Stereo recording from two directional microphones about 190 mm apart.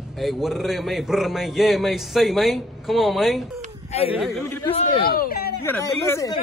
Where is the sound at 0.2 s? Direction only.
Centre (ahead or behind).